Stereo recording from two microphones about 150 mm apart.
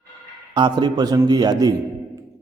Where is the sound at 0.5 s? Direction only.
30° right (ahead or behind).